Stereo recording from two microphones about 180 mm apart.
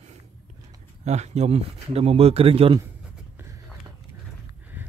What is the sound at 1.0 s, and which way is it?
Speech, 40° right (ahead or behind).